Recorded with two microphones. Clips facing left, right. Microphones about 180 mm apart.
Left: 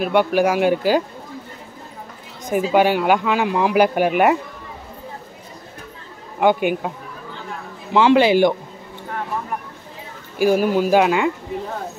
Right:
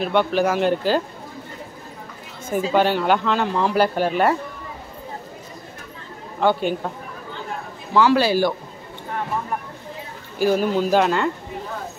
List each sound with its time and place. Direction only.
0.0 s speech: 10° left (ahead or behind)
2.4 s speech: 10° left (ahead or behind)
6.4 s speech: 10° left (ahead or behind)
7.9 s a man's voice: 20° left (ahead or behind)
10.4 s speech: 10° left (ahead or behind)